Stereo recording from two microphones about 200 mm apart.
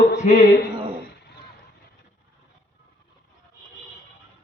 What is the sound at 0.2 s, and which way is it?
Speech, 35° left (ahead or behind).